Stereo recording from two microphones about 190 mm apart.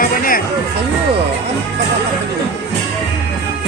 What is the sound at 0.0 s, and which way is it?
Music, 45° left (ahead or behind).